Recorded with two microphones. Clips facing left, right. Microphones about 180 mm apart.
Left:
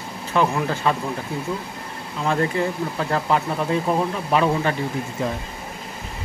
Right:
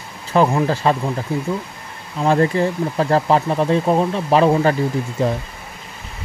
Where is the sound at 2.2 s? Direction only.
35° right (ahead or behind).